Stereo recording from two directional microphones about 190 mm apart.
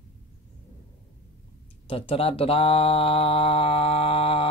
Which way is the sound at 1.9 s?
30° left (ahead or behind).